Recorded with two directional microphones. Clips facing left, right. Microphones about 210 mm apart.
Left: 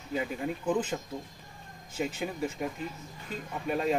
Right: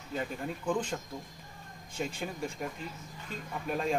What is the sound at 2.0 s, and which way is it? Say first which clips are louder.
Speech: left 3 dB; 5° left (ahead or behind).